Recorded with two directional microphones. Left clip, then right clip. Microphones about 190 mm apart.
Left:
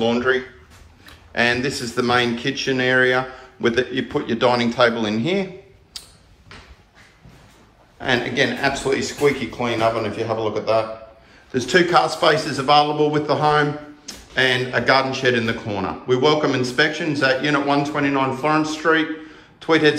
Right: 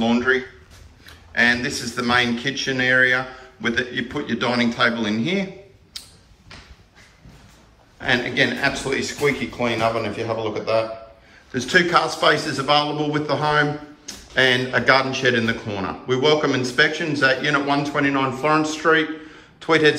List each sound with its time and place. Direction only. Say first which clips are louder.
0.0 s a man's voice: left 1 dB; 15° left (ahead or behind)
8.0 s a man's voice: even; 15° left (ahead or behind)